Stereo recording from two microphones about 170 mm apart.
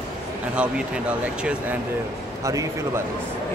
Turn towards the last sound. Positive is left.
turn(degrees=-20)  # may be behind; listen again after turning